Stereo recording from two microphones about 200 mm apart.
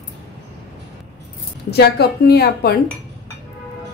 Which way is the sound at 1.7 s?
55° left (ahead or behind).